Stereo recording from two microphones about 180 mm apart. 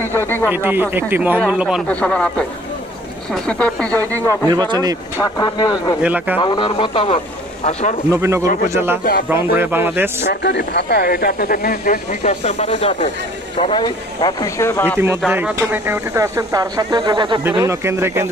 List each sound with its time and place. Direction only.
0.0 s speech: 15° left (ahead or behind)
0.5 s speech: 10° right (ahead or behind)
1.9 s speech: 5° left (ahead or behind)
4.5 s speech: 20° right (ahead or behind)
5.1 s speech: 20° left (ahead or behind)
6.0 s speech: 10° right (ahead or behind)
6.4 s speech: 25° left (ahead or behind)
8.1 s speech: 15° right (ahead or behind)
10.2 s speech: 70° left (ahead or behind); by 12.2 s 50° left (ahead or behind)
12.2 s speech: 35° left (ahead or behind); by 15.0 s 15° left (ahead or behind)
15.0 s speech: 10° right (ahead or behind)
17.6 s speech: 15° right (ahead or behind)